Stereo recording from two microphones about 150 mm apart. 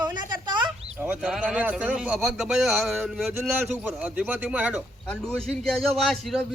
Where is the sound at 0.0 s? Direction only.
30° right (ahead or behind).